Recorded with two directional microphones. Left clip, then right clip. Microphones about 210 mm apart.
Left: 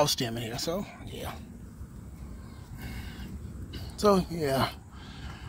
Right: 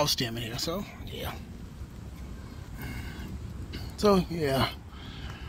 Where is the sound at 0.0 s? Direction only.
20° left (ahead or behind).